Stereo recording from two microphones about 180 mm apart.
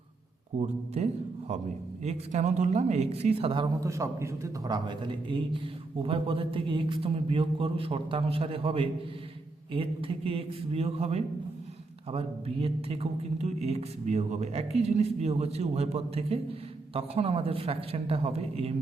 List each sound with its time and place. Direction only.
2.0 s speech: 40° right (ahead or behind)